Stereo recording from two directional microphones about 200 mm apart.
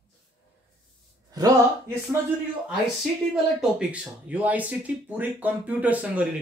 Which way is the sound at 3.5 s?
5° right (ahead or behind).